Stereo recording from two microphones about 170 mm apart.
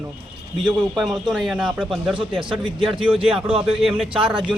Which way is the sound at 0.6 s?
Centre (ahead or behind).